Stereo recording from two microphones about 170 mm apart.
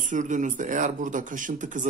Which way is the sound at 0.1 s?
50° right (ahead or behind).